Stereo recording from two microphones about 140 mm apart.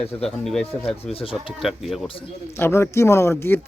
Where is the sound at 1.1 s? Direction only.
45° left (ahead or behind).